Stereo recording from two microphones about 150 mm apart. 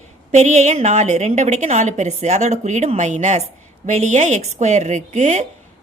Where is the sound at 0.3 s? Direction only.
50° right (ahead or behind).